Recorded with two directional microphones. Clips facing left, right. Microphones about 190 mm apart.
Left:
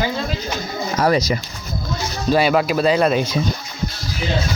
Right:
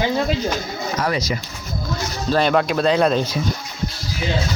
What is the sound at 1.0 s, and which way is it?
Speech, 40° left (ahead or behind).